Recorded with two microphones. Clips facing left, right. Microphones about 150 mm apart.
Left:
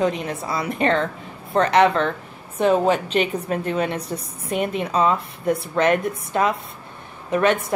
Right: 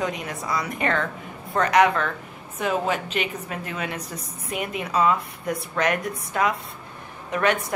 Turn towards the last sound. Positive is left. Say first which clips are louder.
# left 4 dB
turn(degrees=25)  # may be behind; listen again after turning